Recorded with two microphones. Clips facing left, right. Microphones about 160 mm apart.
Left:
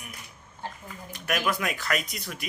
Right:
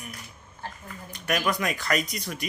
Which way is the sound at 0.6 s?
15° left (ahead or behind).